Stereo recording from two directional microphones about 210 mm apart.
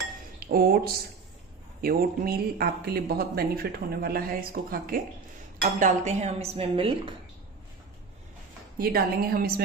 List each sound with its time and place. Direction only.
0.5 s speech: 45° right (ahead or behind); by 7.2 s 25° right (ahead or behind)
8.7 s speech: 45° right (ahead or behind)